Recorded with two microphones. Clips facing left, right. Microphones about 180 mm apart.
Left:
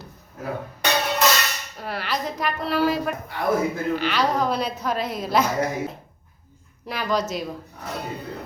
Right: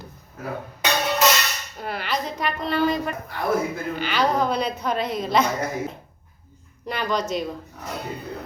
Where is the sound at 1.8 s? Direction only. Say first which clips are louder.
Even; centre (ahead or behind).